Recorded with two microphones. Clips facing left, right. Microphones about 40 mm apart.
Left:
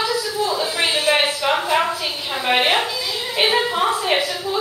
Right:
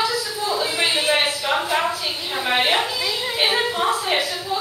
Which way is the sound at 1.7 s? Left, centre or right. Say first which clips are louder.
Left 2 dB; centre.